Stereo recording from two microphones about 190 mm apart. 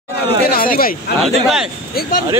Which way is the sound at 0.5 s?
50° left (ahead or behind).